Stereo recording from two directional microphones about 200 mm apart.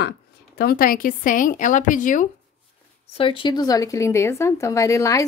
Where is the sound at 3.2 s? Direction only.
25° left (ahead or behind).